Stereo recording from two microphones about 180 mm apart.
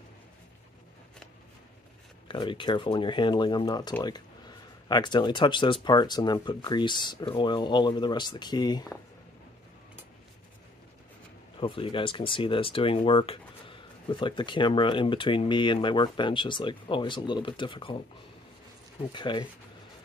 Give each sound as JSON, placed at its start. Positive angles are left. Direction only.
{"t": 2.2, "sound": "speech", "side_deg": 25}
{"t": 11.6, "sound": "speech", "side_deg": 30}
{"t": 19.1, "sound": "speech", "side_deg": 25}